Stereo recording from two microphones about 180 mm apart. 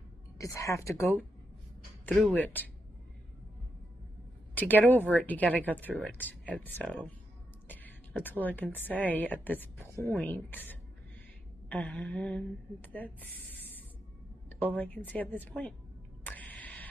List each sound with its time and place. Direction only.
0.4 s speech: 15° left (ahead or behind)
2.0 s speech: 10° left (ahead or behind)
4.6 s a woman's voice: 10° left (ahead or behind)
16.3 s a sound: 10° left (ahead or behind)